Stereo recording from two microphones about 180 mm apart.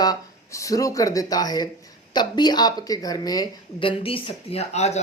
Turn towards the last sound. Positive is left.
turn(degrees=40)  # may be behind; listen again after turning